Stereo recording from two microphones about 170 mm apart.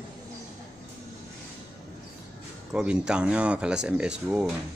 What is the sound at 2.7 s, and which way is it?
Speech, 5° right (ahead or behind).